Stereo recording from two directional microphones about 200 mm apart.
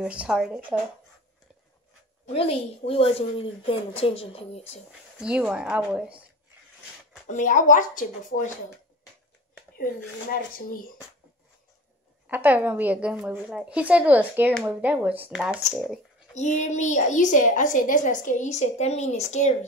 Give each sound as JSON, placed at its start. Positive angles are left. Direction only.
{"t": 0.0, "sound": "speech", "side_deg": -5}
{"t": 2.2, "sound": "a woman's voice", "side_deg": 30}
{"t": 5.2, "sound": "speech", "side_deg": -5}
{"t": 7.2, "sound": "a woman's voice", "side_deg": 40}
{"t": 12.3, "sound": "a woman's voice", "side_deg": -10}
{"t": 16.3, "sound": "a woman's voice", "side_deg": 35}